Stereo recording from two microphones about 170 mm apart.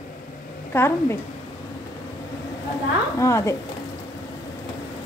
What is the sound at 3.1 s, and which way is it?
Speech, 15° left (ahead or behind).